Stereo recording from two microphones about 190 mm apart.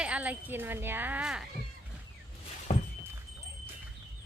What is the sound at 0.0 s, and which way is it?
Speech, 5° right (ahead or behind).